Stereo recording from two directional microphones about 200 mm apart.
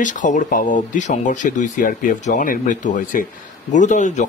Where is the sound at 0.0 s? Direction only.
40° left (ahead or behind).